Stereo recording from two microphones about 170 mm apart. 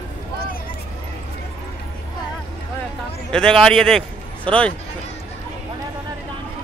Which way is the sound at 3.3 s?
5° left (ahead or behind).